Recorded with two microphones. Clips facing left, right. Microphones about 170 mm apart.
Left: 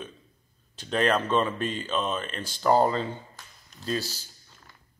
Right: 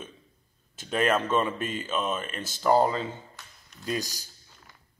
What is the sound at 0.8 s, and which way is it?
A man's voice, 5° right (ahead or behind).